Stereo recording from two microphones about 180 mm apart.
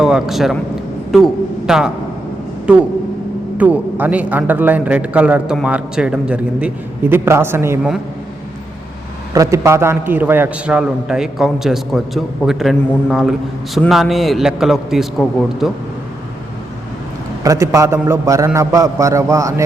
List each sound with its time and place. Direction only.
0.0 s a man's voice: centre (ahead or behind)
9.3 s a man's voice: 15° right (ahead or behind); by 15.7 s centre (ahead or behind)
17.4 s a man's voice: 20° right (ahead or behind)